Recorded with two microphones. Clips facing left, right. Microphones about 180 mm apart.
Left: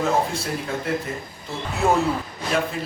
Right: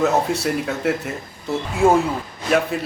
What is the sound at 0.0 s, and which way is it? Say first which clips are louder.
Speech: right 4 dB; 70° right (ahead or behind).